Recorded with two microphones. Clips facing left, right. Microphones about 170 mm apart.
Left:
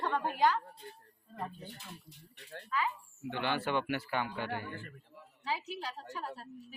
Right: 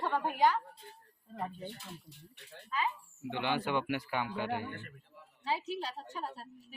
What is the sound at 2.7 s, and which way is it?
A woman's voice, 20° right (ahead or behind).